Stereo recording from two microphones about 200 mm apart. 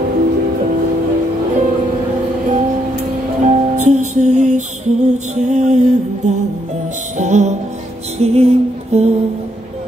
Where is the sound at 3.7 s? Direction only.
35° right (ahead or behind).